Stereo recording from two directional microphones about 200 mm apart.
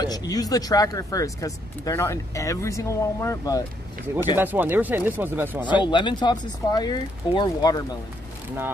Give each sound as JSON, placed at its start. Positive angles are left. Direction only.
{"t": 0.0, "sound": "speech", "side_deg": 20}
{"t": 4.4, "sound": "speech", "side_deg": -10}
{"t": 5.7, "sound": "speech", "side_deg": 25}